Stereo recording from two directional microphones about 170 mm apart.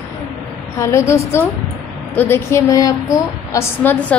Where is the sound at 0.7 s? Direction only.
15° left (ahead or behind).